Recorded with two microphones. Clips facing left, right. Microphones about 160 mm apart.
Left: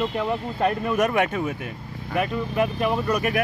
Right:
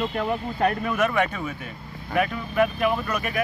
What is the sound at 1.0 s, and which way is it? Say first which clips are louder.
Speech: left 2 dB; 45° left (ahead or behind).